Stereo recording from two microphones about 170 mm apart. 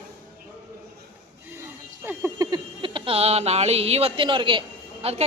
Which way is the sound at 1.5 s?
10° right (ahead or behind).